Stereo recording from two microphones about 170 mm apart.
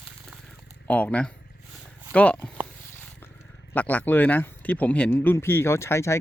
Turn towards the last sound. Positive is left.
turn(degrees=15)  # may be behind; listen again after turning